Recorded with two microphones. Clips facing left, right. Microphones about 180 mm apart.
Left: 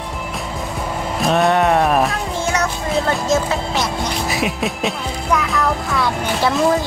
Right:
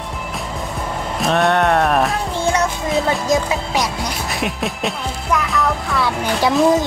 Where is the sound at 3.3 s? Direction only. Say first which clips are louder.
Even; 10° right (ahead or behind).